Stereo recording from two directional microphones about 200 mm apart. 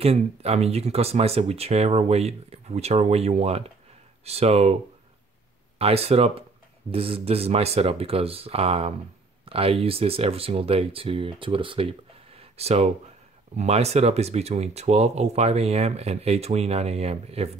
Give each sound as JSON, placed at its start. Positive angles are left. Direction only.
{"t": 0.0, "sound": "speech", "side_deg": -30}
{"t": 5.8, "sound": "speech", "side_deg": -30}